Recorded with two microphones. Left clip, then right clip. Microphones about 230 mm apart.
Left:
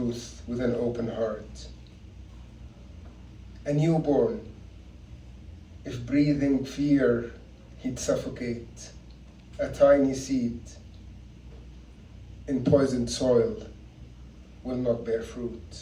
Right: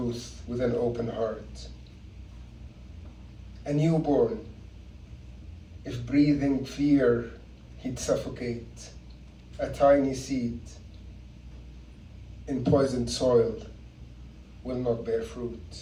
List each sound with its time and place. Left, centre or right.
0.1 s speech: centre
3.6 s speech: centre
5.8 s speech: centre
12.5 s speech: centre
14.7 s speech: centre